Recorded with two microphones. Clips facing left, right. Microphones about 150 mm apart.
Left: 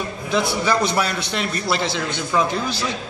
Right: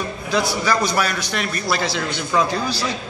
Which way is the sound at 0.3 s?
25° left (ahead or behind).